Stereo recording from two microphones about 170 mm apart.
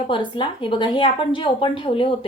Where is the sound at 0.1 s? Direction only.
30° left (ahead or behind).